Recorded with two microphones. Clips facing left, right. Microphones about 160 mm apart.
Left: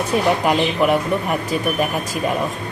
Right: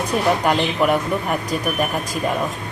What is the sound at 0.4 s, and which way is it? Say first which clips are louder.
Speech: left 1 dB; centre (ahead or behind).